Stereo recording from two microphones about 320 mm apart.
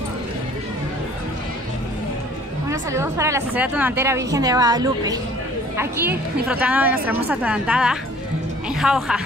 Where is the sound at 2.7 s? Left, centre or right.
Centre.